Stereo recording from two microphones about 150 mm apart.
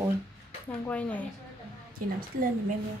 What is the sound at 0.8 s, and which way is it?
Speech, 10° left (ahead or behind).